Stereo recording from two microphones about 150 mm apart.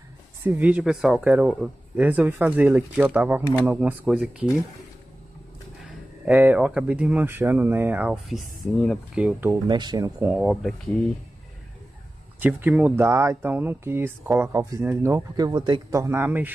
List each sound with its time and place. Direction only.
0.4 s speech: 15° right (ahead or behind)
6.2 s speech: 10° right (ahead or behind)
9.5 s speech: 30° right (ahead or behind)
10.3 s speech: centre (ahead or behind)
12.4 s speech: 15° right (ahead or behind)